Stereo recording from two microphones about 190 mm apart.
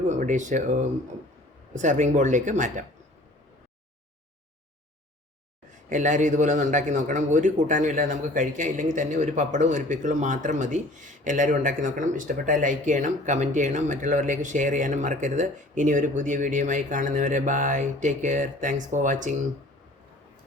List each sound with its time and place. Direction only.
0.1 s a man's voice: 40° right (ahead or behind)
5.9 s a man's voice: 40° right (ahead or behind)